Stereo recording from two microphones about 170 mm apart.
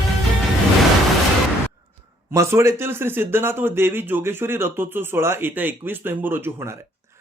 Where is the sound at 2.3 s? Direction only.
15° right (ahead or behind).